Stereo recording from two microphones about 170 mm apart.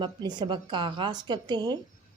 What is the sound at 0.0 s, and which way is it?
Speech, 25° right (ahead or behind).